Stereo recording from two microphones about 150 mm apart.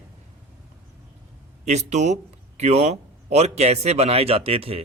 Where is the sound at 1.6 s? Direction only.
50° right (ahead or behind).